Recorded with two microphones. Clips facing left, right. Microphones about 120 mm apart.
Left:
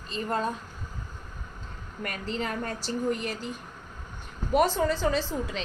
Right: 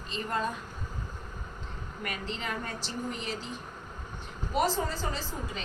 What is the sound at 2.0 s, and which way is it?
A woman's voice, 40° left (ahead or behind).